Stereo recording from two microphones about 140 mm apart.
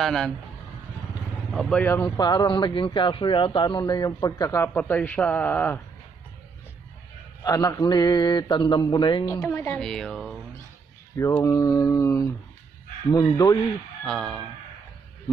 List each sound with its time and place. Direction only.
0.0 s speech: 5° left (ahead or behind)
1.5 s a man's voice: 5° left (ahead or behind)
2.1 s a man's voice: 30° left (ahead or behind)
4.7 s a man's voice: 10° left (ahead or behind)
7.4 s a man's voice: 25° left (ahead or behind)
9.5 s a man's voice: 15° left (ahead or behind)
9.8 s speech: 5° left (ahead or behind)
11.4 s speech: 25° left (ahead or behind)
14.0 s speech: 5° left (ahead or behind)